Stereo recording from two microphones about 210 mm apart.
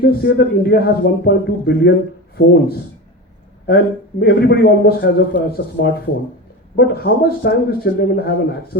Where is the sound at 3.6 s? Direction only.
50° left (ahead or behind).